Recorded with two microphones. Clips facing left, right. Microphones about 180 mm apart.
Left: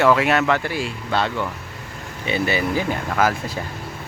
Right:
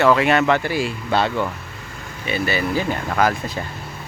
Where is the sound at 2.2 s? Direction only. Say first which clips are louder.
Left 1 dB; 20° left (ahead or behind).